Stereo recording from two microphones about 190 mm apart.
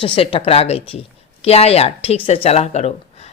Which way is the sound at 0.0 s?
30° left (ahead or behind).